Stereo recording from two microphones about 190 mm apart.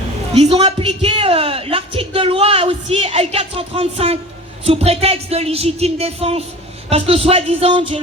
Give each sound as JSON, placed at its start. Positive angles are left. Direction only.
{"t": 0.3, "sound": "a woman's voice", "side_deg": -35}